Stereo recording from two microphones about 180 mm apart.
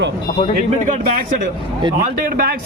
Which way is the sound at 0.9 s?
45° right (ahead or behind).